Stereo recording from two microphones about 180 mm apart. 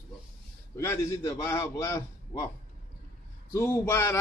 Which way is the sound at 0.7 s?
15° left (ahead or behind).